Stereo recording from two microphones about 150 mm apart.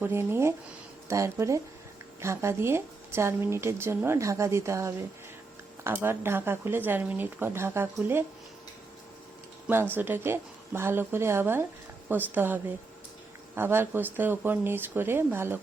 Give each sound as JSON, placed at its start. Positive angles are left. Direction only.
{"t": 0.0, "sound": "a woman's voice", "side_deg": -15}
{"t": 9.9, "sound": "a woman's voice", "side_deg": -15}
{"t": 13.6, "sound": "a woman's voice", "side_deg": -15}